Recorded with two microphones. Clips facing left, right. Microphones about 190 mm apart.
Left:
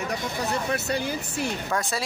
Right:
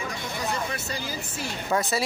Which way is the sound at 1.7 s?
5° right (ahead or behind).